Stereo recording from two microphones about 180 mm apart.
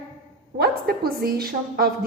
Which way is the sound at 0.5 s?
60° right (ahead or behind).